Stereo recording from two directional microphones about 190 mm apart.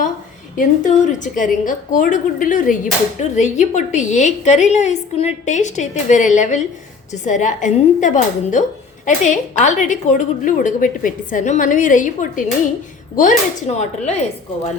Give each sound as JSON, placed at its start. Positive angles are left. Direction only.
{"t": 0.5, "sound": "a woman's voice", "side_deg": 40}